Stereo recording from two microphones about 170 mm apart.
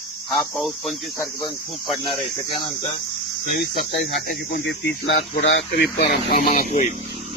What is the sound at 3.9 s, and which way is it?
Speech, 85° left.